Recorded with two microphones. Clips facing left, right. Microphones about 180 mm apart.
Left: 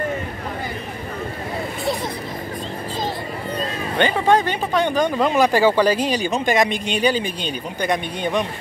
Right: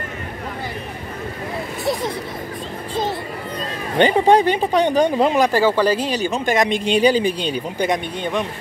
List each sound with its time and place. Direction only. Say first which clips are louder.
4.4 s speech: right 4 dB; 35° right (ahead or behind)
5.4 s speech: even; 15° left (ahead or behind)
6.7 s speech: right 4 dB; 30° right (ahead or behind)
8.2 s speech: left 1 dB; 15° left (ahead or behind)